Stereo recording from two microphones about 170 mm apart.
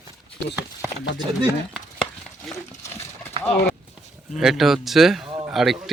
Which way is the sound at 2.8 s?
15° left (ahead or behind).